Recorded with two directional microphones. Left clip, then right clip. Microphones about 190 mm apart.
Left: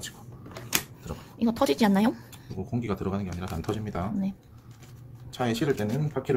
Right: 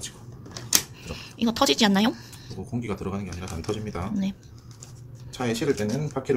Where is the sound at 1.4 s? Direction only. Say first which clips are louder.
Right 3 dB; centre (ahead or behind).